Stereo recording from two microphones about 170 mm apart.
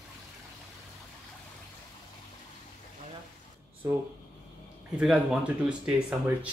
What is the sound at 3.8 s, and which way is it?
Speech, 20° right (ahead or behind).